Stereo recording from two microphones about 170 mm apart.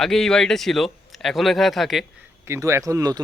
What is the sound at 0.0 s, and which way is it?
Speech, centre (ahead or behind).